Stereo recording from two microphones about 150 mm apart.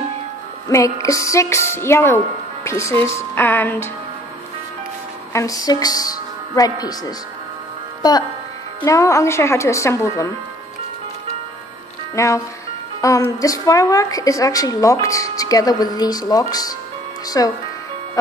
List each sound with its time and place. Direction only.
0.7 s a woman's voice: 20° left (ahead or behind)
5.3 s a woman's voice: 20° left (ahead or behind)
12.2 s a woman's voice: 20° left (ahead or behind)